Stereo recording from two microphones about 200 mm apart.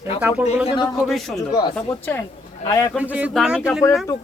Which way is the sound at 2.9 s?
5° right (ahead or behind).